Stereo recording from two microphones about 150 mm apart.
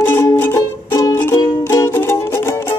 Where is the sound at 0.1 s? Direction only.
15° left (ahead or behind).